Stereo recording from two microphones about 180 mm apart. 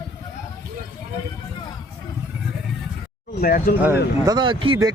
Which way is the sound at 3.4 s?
50° left (ahead or behind).